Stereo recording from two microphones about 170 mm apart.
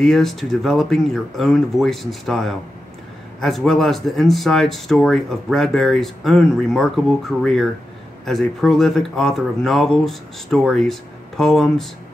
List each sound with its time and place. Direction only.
0.0 s speech: centre (ahead or behind)